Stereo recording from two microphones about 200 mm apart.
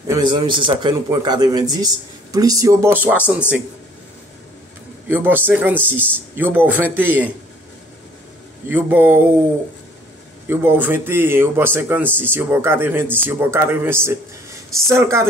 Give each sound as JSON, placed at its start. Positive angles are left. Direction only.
{"t": 0.1, "sound": "a man's voice", "side_deg": -20}
{"t": 5.0, "sound": "speech", "side_deg": -10}
{"t": 5.8, "sound": "speech", "side_deg": 5}
{"t": 6.1, "sound": "speech", "side_deg": -10}
{"t": 8.6, "sound": "speech", "side_deg": -10}
{"t": 10.5, "sound": "speech", "side_deg": -10}